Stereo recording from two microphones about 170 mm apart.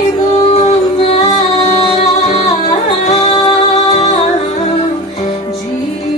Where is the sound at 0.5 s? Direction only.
35° left (ahead or behind).